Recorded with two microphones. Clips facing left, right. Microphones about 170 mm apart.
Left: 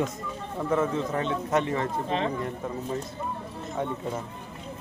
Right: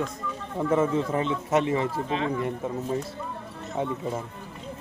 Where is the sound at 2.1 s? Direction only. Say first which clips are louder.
Even; 35° left (ahead or behind).